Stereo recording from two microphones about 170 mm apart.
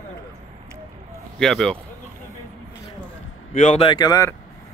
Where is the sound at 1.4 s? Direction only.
Centre (ahead or behind).